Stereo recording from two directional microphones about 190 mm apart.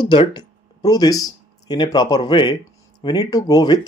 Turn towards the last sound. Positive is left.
turn(degrees=20)  # may be behind; listen again after turning